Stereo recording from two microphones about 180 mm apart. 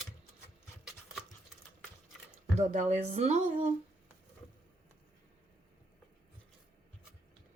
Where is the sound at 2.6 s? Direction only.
40° right (ahead or behind).